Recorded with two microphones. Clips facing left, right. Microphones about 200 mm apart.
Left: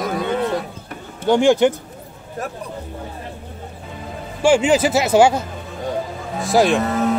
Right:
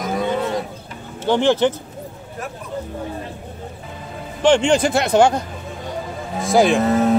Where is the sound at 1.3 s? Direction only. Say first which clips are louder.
Left 2 dB; 10° left (ahead or behind).